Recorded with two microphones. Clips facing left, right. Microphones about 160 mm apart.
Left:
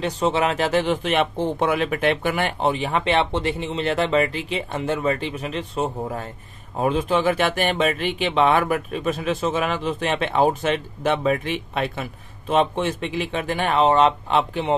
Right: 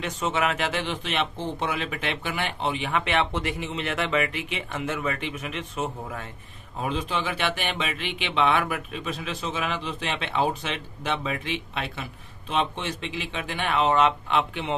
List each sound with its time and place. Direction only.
0.0 s speech: 35° left (ahead or behind)
6.8 s speech: 45° left (ahead or behind)